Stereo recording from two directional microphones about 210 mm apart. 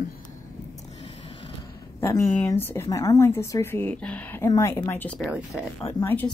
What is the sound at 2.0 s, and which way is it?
A woman's voice, 10° left (ahead or behind).